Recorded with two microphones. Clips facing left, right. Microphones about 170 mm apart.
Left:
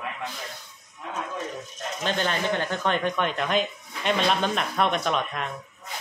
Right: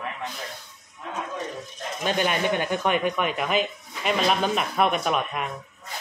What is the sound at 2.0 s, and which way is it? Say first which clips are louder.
Speech: right 2 dB; 10° right (ahead or behind).